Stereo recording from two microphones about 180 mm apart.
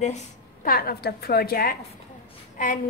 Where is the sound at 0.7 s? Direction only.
55° left (ahead or behind).